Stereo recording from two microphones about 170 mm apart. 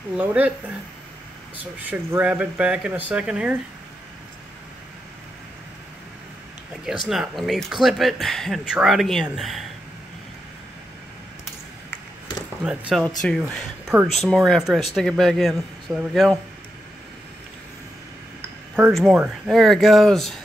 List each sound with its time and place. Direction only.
0.1 s speech: 5° right (ahead or behind)
1.6 s speech: 10° right (ahead or behind)
7.1 s speech: centre (ahead or behind)
12.6 s speech: 5° right (ahead or behind)
18.8 s speech: centre (ahead or behind)